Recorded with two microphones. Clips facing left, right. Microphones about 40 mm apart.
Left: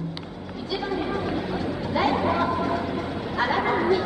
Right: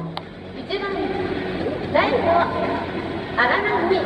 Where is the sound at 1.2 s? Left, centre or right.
Right.